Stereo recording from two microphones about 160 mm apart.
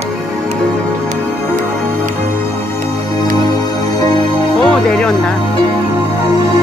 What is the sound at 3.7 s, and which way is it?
Music, 25° left (ahead or behind).